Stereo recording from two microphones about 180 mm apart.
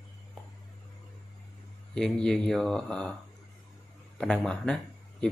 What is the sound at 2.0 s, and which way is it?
Speech, 5° left (ahead or behind).